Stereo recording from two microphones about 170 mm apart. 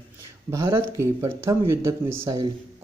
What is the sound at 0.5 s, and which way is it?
Speech, 15° right (ahead or behind).